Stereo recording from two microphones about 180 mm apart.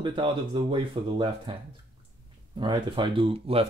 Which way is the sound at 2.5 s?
25° right (ahead or behind).